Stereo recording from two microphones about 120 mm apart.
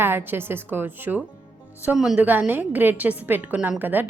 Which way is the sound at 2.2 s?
15° right (ahead or behind).